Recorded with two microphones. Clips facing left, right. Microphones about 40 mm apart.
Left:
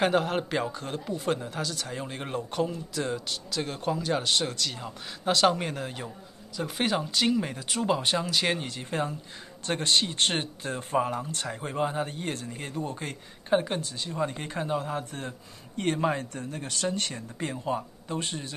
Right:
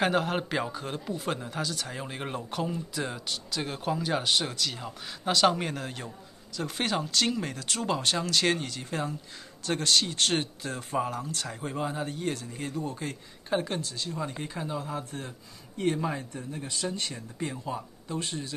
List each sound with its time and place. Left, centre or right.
0.0 s speech: centre
9.7 s speech: left
13.5 s speech: centre
13.7 s speech: left
16.8 s speech: centre
18.0 s speech: left